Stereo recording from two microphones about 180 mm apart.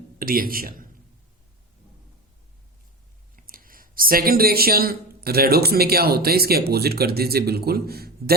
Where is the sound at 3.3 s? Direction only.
50° right (ahead or behind).